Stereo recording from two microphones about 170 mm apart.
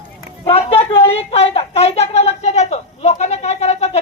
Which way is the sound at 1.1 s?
35° left (ahead or behind).